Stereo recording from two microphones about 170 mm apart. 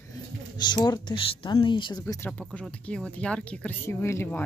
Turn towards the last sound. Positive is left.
turn(degrees=15)  # may be behind; listen again after turning